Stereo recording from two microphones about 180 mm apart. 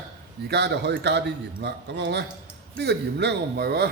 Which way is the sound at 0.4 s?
65° right (ahead or behind).